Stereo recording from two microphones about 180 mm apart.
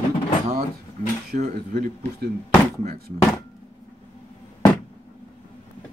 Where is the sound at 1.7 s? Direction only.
55° right (ahead or behind).